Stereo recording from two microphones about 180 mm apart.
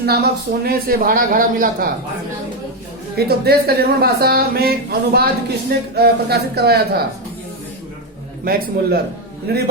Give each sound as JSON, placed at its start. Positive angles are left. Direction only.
{"t": 0.0, "sound": "speech", "side_deg": -60}
{"t": 3.2, "sound": "speech", "side_deg": -60}
{"t": 9.5, "sound": "speech", "side_deg": -60}